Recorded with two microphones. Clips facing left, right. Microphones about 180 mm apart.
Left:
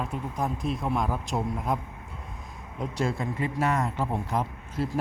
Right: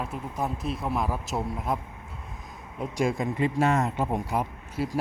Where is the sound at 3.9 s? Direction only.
15° right (ahead or behind).